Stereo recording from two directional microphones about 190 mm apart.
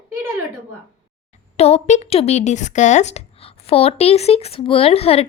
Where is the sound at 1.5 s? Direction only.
35° left (ahead or behind).